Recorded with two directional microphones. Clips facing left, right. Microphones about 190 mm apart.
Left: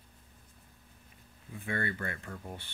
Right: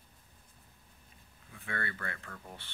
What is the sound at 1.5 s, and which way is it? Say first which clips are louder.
Speech: left 5 dB; 20° left (ahead or behind).